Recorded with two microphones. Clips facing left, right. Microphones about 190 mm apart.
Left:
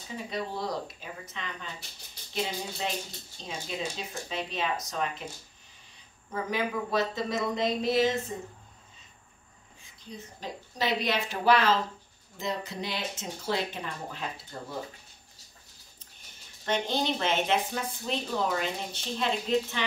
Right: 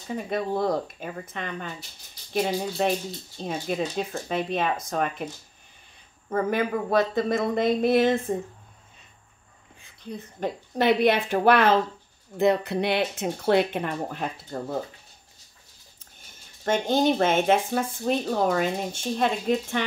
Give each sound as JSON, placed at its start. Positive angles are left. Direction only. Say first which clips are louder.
{"t": 0.1, "sound": "speech", "louder": "right 7 dB", "side_deg": -55}
{"t": 6.3, "sound": "speech", "louder": "right 6 dB", "side_deg": -55}
{"t": 10.0, "sound": "speech", "louder": "right 9 dB", "side_deg": -60}
{"t": 16.6, "sound": "speech", "louder": "right 7 dB", "side_deg": -50}